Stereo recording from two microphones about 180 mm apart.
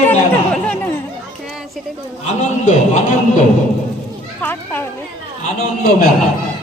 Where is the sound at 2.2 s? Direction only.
40° left (ahead or behind).